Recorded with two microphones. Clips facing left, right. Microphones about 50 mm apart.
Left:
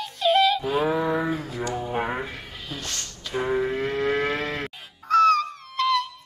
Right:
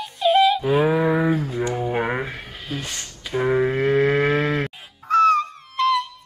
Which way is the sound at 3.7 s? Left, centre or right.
Right.